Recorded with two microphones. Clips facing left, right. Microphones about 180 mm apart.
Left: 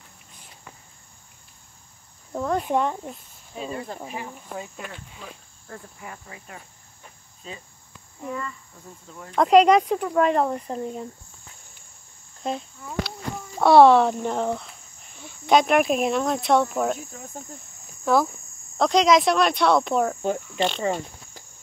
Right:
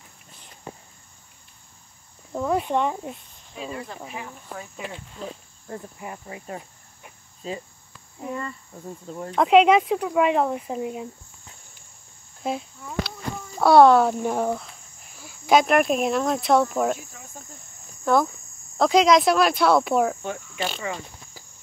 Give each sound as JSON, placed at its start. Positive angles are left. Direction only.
{"t": 0.7, "sound": "cricket", "side_deg": -30}
{"t": 2.3, "sound": "speech", "side_deg": 0}
{"t": 3.7, "sound": "speech", "side_deg": 30}
{"t": 5.2, "sound": "cricket", "side_deg": -25}
{"t": 8.4, "sound": "cricket", "side_deg": -35}
{"t": 9.3, "sound": "speech", "side_deg": -5}
{"t": 12.4, "sound": "speech", "side_deg": -5}
{"t": 18.0, "sound": "speech", "side_deg": 5}